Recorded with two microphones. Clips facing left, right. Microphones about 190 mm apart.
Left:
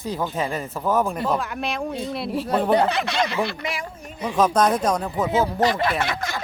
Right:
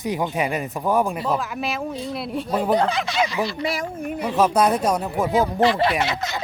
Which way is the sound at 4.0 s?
60° right (ahead or behind).